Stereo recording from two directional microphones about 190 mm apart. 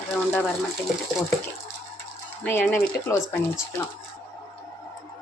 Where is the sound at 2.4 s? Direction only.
10° left (ahead or behind).